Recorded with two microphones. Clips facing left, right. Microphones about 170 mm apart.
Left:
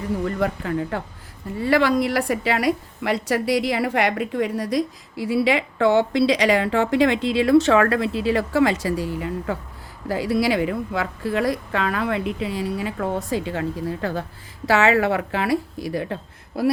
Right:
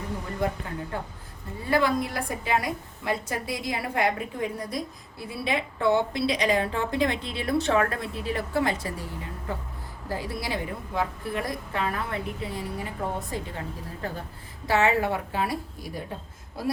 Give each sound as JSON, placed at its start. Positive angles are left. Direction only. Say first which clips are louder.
{"t": 0.3, "sound": "a woman's voice", "louder": "left 6 dB", "side_deg": 75}